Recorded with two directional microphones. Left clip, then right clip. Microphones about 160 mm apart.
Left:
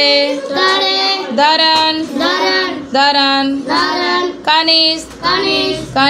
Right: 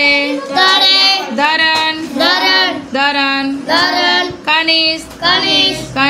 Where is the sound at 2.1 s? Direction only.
50° right (ahead or behind).